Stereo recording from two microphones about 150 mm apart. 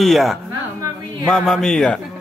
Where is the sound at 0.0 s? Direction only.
Centre (ahead or behind).